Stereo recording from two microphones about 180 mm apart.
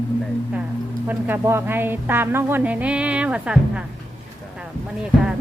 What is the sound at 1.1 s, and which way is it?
A woman's voice, 10° right (ahead or behind).